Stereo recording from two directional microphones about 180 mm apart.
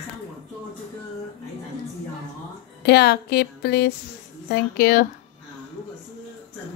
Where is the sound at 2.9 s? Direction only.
65° left (ahead or behind).